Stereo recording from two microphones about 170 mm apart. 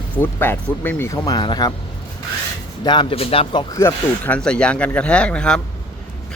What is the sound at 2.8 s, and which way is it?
Speech, 30° left (ahead or behind).